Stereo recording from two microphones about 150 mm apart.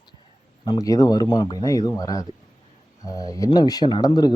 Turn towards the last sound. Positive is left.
turn(degrees=25)  # may be behind; listen again after turning